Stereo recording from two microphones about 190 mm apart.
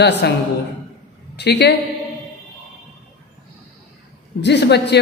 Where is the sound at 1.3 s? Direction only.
60° left (ahead or behind).